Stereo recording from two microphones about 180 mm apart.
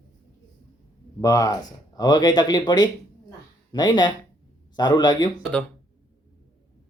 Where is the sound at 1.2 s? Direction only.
20° left (ahead or behind).